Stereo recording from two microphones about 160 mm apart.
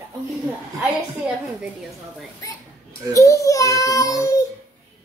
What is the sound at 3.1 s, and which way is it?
A child's voice, 20° left (ahead or behind).